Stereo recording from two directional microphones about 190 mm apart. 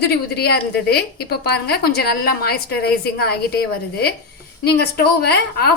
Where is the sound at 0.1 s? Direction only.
55° left (ahead or behind).